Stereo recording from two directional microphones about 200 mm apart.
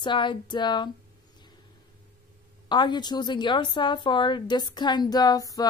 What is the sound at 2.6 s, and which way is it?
A woman's voice, 20° left (ahead or behind).